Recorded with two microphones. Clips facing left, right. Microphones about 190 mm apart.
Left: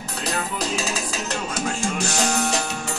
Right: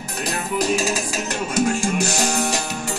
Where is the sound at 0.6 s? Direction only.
10° right (ahead or behind).